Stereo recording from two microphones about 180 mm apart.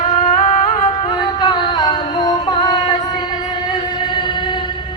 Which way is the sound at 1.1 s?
25° left (ahead or behind).